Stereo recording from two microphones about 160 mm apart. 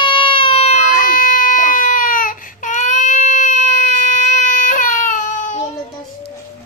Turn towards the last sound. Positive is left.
turn(degrees=50)  # may be behind; listen again after turning